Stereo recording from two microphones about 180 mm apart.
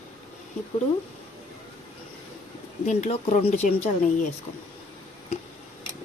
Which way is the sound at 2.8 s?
40° left (ahead or behind).